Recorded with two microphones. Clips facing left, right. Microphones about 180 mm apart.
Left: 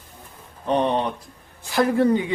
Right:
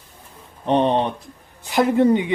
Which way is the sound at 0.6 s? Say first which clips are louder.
Right 3 dB; 25° right (ahead or behind).